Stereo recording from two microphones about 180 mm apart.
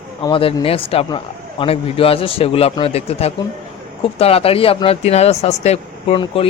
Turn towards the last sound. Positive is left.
turn(degrees=35)  # may be behind; listen again after turning